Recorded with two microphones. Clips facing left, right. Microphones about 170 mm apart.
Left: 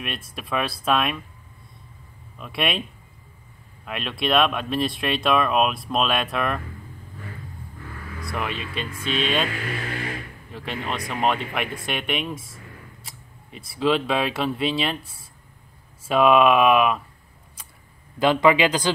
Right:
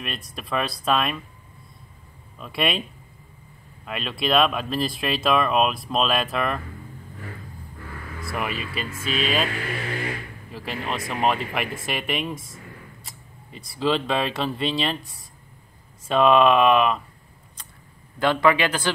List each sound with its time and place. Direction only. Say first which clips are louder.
0.0 s speech: left 1 dB; centre (ahead or behind)
2.3 s speech: right 1 dB; centre (ahead or behind)
3.8 s speech: even; centre (ahead or behind)
8.3 s speech: even; 5° right (ahead or behind)
10.5 s speech: even; centre (ahead or behind)
18.2 s speech: left 2 dB; 15° left (ahead or behind)